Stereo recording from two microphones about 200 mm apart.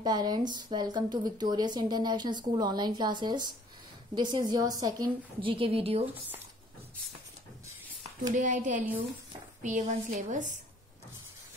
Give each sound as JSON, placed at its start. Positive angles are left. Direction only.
{"t": 0.0, "sound": "speech", "side_deg": -20}
{"t": 8.4, "sound": "a woman's voice", "side_deg": -40}